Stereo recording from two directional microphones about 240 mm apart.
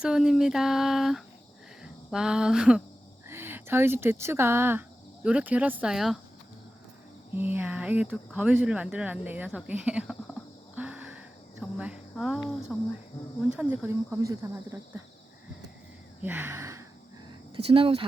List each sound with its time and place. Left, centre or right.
0.0 s speech: centre
7.3 s speech: centre
10.3 s a sound: centre
11.6 s speech: centre
16.2 s speech: centre
17.6 s speech: right